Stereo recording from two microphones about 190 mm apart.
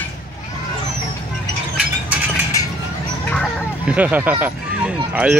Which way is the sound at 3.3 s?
Centre (ahead or behind).